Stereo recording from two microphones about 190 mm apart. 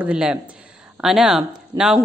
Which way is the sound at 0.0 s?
5° right (ahead or behind).